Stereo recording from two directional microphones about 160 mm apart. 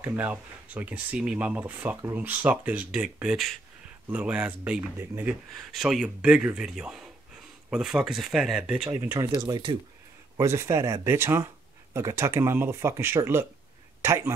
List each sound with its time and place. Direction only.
0.0 s speech: 10° right (ahead or behind)
5.5 s speech: centre (ahead or behind)
9.0 s speech: 20° right (ahead or behind)
10.3 s speech: 15° right (ahead or behind)